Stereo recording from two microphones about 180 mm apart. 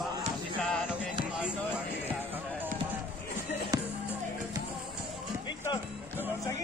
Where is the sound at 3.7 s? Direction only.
20° right (ahead or behind).